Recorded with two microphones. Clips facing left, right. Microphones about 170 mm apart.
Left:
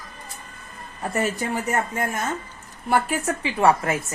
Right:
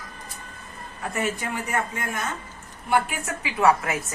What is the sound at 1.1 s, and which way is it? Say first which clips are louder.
Speech: left 3 dB; 40° left (ahead or behind).